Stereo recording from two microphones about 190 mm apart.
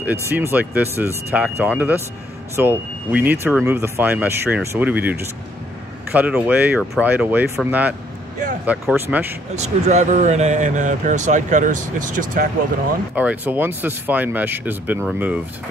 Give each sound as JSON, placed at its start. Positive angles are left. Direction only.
{"t": 0.0, "sound": "speech", "side_deg": -10}
{"t": 9.6, "sound": "speech", "side_deg": -35}
{"t": 13.1, "sound": "speech", "side_deg": -10}